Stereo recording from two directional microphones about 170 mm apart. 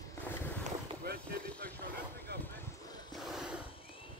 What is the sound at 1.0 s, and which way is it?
Vehicle, 65° right (ahead or behind).